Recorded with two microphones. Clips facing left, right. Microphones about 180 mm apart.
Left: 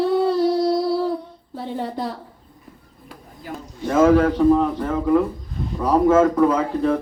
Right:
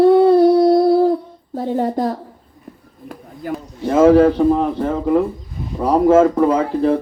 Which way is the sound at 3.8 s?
30° right (ahead or behind).